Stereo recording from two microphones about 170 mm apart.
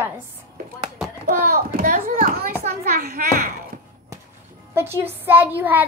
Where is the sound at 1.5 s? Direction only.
60° right (ahead or behind).